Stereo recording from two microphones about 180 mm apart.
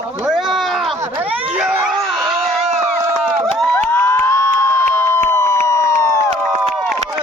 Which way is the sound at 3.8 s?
10° left (ahead or behind).